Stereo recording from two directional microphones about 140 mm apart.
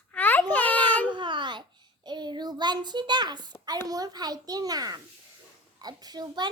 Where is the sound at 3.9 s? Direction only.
30° right (ahead or behind).